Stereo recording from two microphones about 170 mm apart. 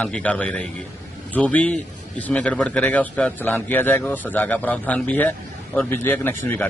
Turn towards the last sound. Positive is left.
turn(degrees=10)  # may be behind; listen again after turning